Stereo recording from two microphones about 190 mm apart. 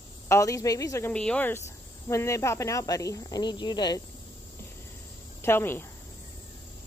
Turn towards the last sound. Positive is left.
turn(degrees=10)  # may be behind; listen again after turning